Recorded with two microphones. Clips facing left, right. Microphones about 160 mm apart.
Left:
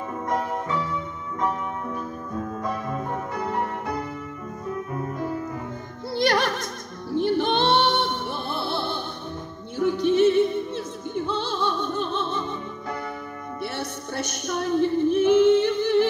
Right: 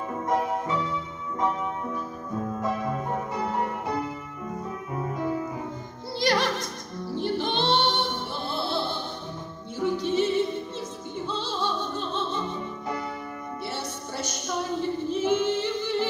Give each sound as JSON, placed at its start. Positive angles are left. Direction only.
{"t": 6.1, "sound": "music", "side_deg": 55}
{"t": 11.2, "sound": "opera", "side_deg": 60}
{"t": 13.6, "sound": "music", "side_deg": 60}